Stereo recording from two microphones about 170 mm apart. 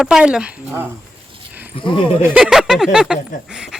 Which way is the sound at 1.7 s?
30° left (ahead or behind).